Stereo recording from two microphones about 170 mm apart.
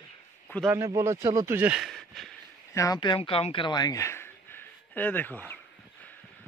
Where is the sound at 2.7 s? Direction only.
20° left (ahead or behind).